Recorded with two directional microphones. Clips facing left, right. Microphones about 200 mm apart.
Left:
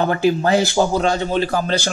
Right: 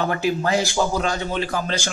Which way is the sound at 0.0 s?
30° left (ahead or behind).